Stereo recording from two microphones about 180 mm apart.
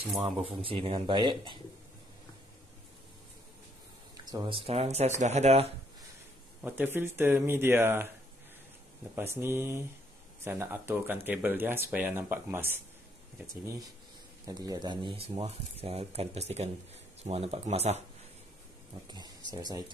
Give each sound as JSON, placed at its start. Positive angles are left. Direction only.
{"t": 0.2, "sound": "speech", "side_deg": -30}
{"t": 4.2, "sound": "speech", "side_deg": -25}
{"t": 6.6, "sound": "speech", "side_deg": -10}
{"t": 9.1, "sound": "speech", "side_deg": -15}
{"t": 14.4, "sound": "speech", "side_deg": -20}
{"t": 19.0, "sound": "speech", "side_deg": -25}